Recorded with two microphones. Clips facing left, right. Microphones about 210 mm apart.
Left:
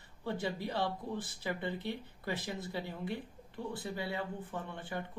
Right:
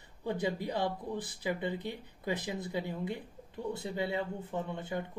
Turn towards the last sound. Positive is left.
turn(degrees=-20)  # may be behind; listen again after turning